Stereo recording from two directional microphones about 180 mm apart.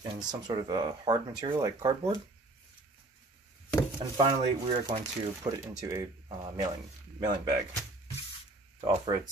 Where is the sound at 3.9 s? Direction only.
25° right (ahead or behind).